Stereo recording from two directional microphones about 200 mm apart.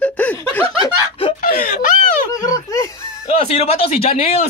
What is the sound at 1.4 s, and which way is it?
Speech, 45° left (ahead or behind).